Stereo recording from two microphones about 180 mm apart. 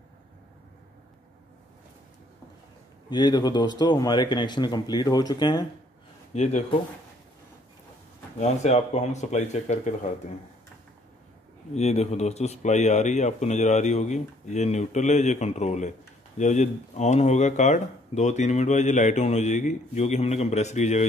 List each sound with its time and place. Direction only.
3.1 s speech: 25° left (ahead or behind)
6.3 s speech: 40° left (ahead or behind)
8.4 s speech: 40° left (ahead or behind)
11.7 s speech: 35° left (ahead or behind)